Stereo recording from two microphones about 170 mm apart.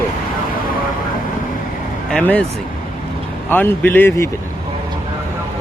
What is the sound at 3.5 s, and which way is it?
Speech, 10° left (ahead or behind).